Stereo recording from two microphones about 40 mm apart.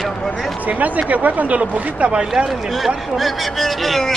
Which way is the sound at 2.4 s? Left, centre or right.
Centre.